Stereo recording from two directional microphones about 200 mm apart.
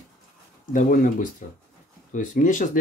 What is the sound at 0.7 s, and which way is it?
Speech, 40° left (ahead or behind).